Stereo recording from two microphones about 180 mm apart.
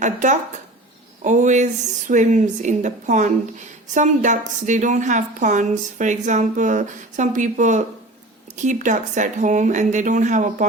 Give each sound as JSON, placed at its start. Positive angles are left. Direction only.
{"t": 0.0, "sound": "a woman's voice", "side_deg": -45}